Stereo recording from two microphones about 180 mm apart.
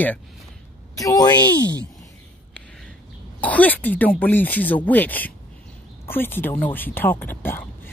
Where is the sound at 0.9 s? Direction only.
20° left (ahead or behind).